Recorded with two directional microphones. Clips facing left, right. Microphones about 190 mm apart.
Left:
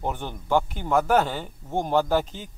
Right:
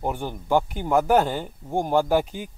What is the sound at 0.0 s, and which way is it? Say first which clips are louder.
Speech: right 2 dB; 10° right (ahead or behind).